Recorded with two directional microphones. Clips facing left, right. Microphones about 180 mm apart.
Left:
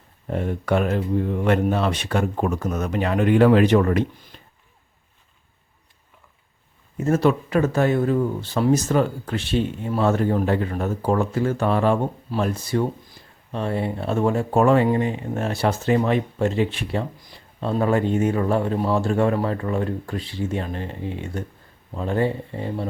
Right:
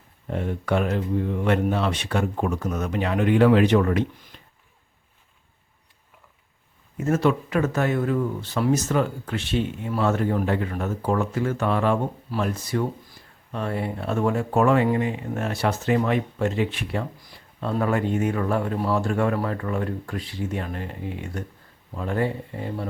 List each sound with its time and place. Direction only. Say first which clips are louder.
0.3 s speech: left 2 dB; 40° left (ahead or behind)
6.9 s speech: left 2 dB; 35° left (ahead or behind)